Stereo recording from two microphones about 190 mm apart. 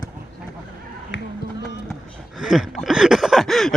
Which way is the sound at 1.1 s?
70° left (ahead or behind).